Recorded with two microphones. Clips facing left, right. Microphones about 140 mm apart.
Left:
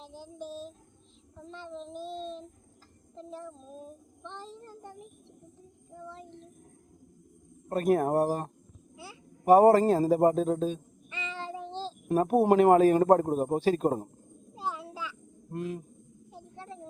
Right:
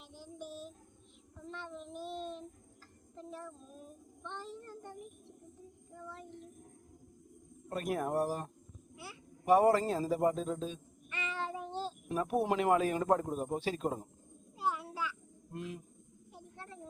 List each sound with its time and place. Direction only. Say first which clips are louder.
0.4 s child singing: left 6 dB; 90° left
1.5 s child singing: left 4 dB; 30° left (ahead or behind)
7.7 s a man's voice: left 9 dB; 45° left (ahead or behind)
11.4 s child singing: left 2 dB; 30° left (ahead or behind)
11.7 s child singing: left 2 dB; 90° left
12.0 s a man's voice: left 9 dB; 50° left (ahead or behind)
14.5 s a sound: even; 25° left (ahead or behind)
15.5 s a man's voice: left 8 dB; 45° left (ahead or behind)